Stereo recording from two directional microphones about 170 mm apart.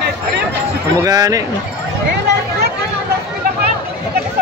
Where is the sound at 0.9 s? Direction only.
20° right (ahead or behind).